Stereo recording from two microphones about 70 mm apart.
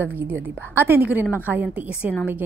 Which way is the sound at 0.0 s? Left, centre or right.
Right.